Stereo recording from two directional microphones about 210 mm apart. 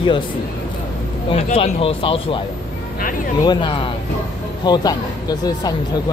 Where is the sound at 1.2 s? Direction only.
30° left (ahead or behind).